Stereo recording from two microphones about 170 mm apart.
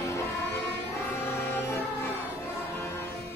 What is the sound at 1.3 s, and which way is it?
Music, 10° left (ahead or behind).